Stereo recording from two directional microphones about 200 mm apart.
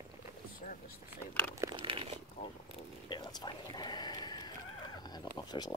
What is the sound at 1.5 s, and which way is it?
Crumpling, 20° right (ahead or behind).